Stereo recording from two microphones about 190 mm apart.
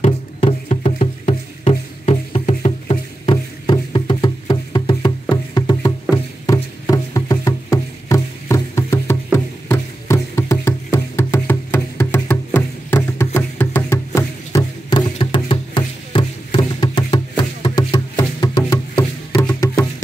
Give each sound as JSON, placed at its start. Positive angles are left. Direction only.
{"t": 0.0, "sound": "music", "side_deg": 30}
{"t": 5.3, "sound": "wood block", "side_deg": 20}
{"t": 6.4, "sound": "music", "side_deg": 20}